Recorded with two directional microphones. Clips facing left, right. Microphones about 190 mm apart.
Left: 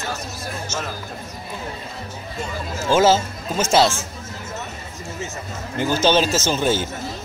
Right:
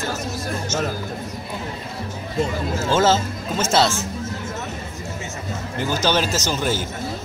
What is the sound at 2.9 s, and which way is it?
Speech, 15° left (ahead or behind).